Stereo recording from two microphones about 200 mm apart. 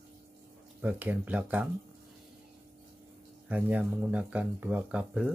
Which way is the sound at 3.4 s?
5° right (ahead or behind).